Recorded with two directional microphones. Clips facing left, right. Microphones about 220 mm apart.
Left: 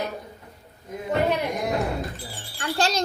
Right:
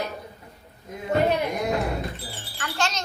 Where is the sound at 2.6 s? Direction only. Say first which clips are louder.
Left 4 dB; 35° left (ahead or behind).